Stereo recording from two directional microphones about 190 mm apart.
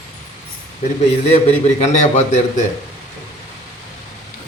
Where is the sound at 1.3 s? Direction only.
35° left (ahead or behind).